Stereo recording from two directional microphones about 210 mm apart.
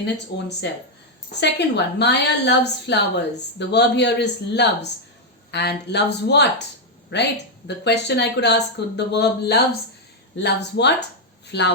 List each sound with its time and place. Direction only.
0.0 s a woman's voice: 55° left (ahead or behind)
7.7 s a woman's voice: 55° left (ahead or behind)